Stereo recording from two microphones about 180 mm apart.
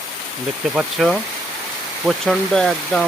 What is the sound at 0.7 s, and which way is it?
Speech, centre (ahead or behind).